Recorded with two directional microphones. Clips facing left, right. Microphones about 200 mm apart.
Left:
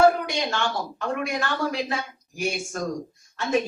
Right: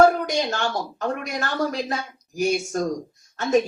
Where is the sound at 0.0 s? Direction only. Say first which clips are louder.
Right 2 dB; 40° right (ahead or behind).